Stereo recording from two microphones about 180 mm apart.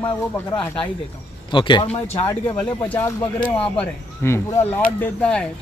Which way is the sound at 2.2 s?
10° left (ahead or behind).